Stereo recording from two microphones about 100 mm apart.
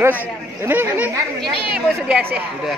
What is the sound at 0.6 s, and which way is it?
Speech, 20° right (ahead or behind).